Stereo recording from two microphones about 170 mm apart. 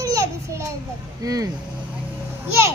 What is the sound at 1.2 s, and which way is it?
Speech, 20° right (ahead or behind).